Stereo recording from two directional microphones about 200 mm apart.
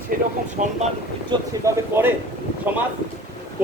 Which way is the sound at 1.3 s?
15° right (ahead or behind).